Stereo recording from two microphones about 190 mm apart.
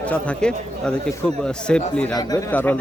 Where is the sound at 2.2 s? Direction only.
20° left (ahead or behind).